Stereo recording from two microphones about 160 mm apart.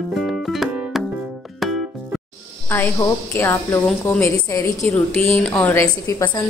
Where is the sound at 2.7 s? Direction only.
15° left (ahead or behind).